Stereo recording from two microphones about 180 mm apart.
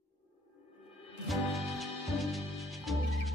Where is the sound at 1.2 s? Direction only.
Centre (ahead or behind).